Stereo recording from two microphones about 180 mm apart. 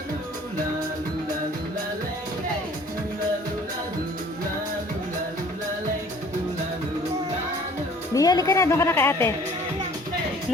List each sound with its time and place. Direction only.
8.1 s a woman's voice: 20° left (ahead or behind)